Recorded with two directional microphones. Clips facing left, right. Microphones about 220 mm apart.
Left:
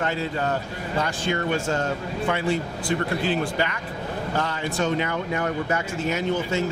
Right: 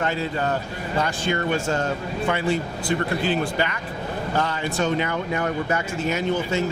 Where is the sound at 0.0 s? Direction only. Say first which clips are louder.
Right 1 dB; 20° right (ahead or behind).